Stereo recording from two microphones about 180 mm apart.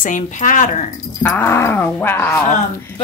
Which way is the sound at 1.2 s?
10° left (ahead or behind).